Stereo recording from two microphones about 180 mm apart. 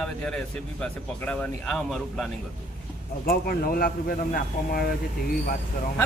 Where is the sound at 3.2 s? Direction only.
55° left (ahead or behind).